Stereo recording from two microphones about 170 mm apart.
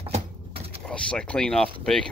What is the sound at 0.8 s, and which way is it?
Speech, 5° left (ahead or behind).